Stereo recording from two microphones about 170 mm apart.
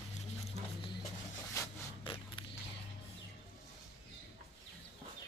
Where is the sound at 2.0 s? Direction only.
30° left (ahead or behind).